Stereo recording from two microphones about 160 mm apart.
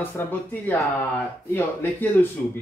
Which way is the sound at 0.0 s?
10° left (ahead or behind).